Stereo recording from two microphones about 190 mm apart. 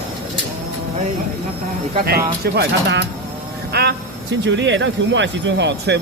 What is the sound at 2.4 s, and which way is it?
Speech, 60° right (ahead or behind).